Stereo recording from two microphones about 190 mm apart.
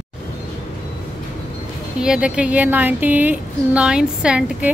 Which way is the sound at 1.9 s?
5° right (ahead or behind).